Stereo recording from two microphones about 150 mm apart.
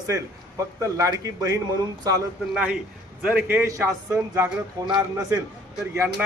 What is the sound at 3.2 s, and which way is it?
A man's voice, 10° right (ahead or behind).